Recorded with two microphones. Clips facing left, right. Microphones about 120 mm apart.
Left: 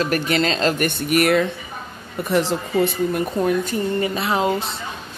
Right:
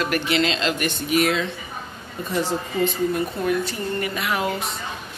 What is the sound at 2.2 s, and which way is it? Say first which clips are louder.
Speech: left 4 dB; 90° left.